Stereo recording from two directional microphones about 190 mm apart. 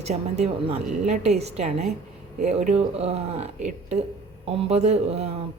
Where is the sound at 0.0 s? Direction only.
35° right (ahead or behind).